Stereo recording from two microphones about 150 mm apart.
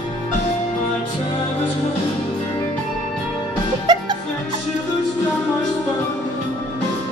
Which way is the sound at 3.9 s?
30° right (ahead or behind).